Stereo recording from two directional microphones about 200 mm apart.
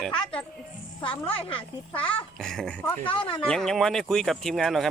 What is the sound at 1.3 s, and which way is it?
Speech, 25° left (ahead or behind).